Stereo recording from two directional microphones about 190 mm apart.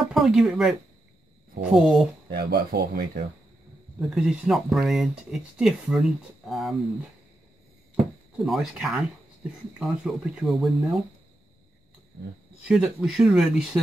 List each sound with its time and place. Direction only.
0.0 s speech: centre (ahead or behind)
2.3 s speech: 55° right (ahead or behind)
4.1 s speech: centre (ahead or behind)
8.5 s speech: centre (ahead or behind)
12.6 s speech: 5° right (ahead or behind)